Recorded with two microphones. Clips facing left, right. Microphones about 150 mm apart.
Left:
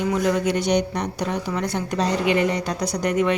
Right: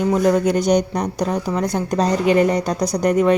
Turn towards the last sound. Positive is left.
turn(degrees=-40)  # may be behind; listen again after turning